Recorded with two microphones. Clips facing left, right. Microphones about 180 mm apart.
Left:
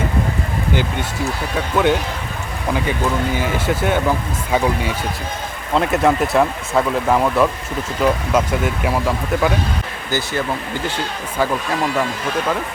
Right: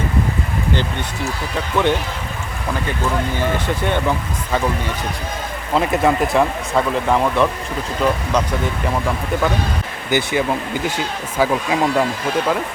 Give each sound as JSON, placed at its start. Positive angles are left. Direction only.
{"t": 1.2, "sound": "speech", "side_deg": 5}
{"t": 3.3, "sound": "speech", "side_deg": 5}
{"t": 5.7, "sound": "speech", "side_deg": 0}
{"t": 10.1, "sound": "speech", "side_deg": -15}